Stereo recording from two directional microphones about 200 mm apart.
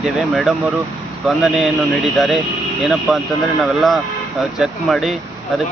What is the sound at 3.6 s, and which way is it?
Speech, centre (ahead or behind).